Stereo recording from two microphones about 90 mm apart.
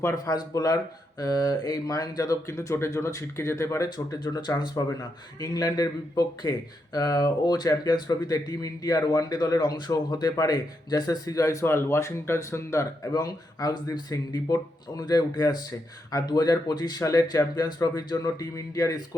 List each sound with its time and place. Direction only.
0.0 s speech: 40° left (ahead or behind)
3.8 s speech: 55° left (ahead or behind); by 13.1 s 30° left (ahead or behind)
13.1 s speech: 45° left (ahead or behind)